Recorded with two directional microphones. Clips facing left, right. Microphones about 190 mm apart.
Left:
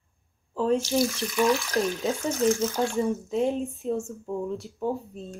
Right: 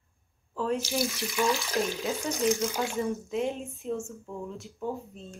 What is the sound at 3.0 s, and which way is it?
Speech, 35° left (ahead or behind).